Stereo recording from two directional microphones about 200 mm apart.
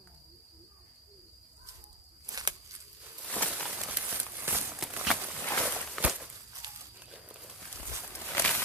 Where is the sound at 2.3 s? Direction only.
20° right (ahead or behind).